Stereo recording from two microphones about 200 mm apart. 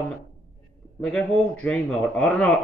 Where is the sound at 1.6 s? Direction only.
5° left (ahead or behind).